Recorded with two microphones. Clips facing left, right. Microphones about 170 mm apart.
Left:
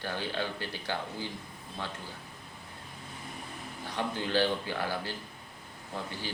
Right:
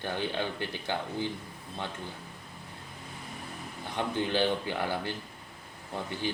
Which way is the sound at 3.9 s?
20° right (ahead or behind).